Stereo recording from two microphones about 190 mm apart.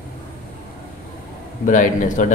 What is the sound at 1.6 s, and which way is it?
Speech, 45° left (ahead or behind).